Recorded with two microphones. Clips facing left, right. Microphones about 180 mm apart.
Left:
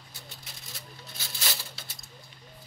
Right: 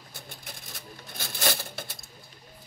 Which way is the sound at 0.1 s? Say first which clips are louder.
Right 5 dB; 50° right (ahead or behind).